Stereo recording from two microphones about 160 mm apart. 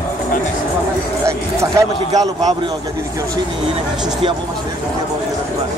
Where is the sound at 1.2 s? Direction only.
20° right (ahead or behind).